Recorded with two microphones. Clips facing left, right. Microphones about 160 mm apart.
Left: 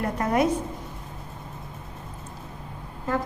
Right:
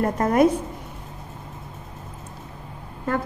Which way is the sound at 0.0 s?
45° right (ahead or behind).